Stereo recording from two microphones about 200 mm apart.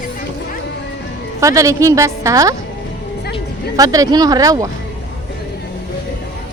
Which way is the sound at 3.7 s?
20° right (ahead or behind).